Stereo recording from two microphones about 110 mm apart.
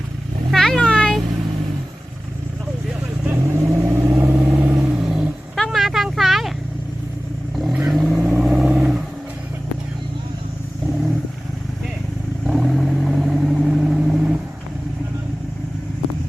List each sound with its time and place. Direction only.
0.5 s vehicle: 5° left (ahead or behind)
3.2 s vehicle: 20° right (ahead or behind)
5.0 s vehicle: 5° right (ahead or behind)
7.5 s vehicle: centre (ahead or behind)
12.5 s vehicle: centre (ahead or behind)